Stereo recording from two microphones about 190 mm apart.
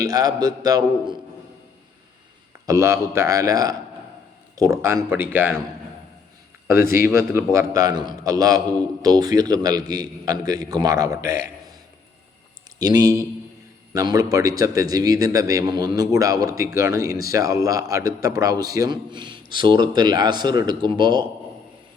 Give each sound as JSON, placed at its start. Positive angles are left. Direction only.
{"t": 0.0, "sound": "a man's voice", "side_deg": -20}
{"t": 2.6, "sound": "a man's voice", "side_deg": -15}
{"t": 6.7, "sound": "a man's voice", "side_deg": -15}
{"t": 12.8, "sound": "a man's voice", "side_deg": -20}